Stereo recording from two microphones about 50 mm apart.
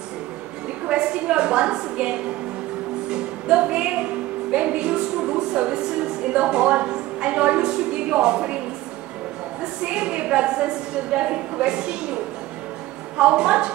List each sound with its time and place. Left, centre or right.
0.8 s a woman's voice: centre
9.6 s speech: centre
13.2 s speech: centre